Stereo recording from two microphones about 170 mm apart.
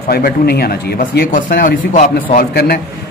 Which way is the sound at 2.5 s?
65° left (ahead or behind).